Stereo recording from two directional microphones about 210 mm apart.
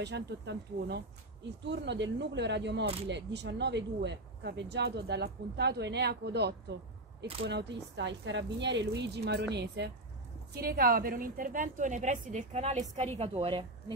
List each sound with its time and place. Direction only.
0.0 s a woman's voice: 55° right (ahead or behind); by 13.9 s 25° right (ahead or behind)